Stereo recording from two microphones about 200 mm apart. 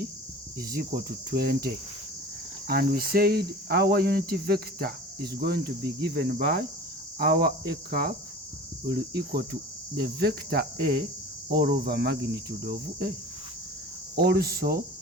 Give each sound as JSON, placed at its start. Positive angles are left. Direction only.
{"t": 0.7, "sound": "cricket", "side_deg": -45}
{"t": 14.2, "sound": "cricket", "side_deg": -50}